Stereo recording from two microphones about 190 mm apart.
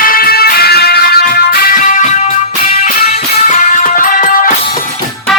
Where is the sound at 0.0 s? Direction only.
50° left (ahead or behind).